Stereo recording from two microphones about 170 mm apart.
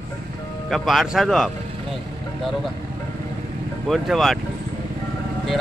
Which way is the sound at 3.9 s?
Centre (ahead or behind).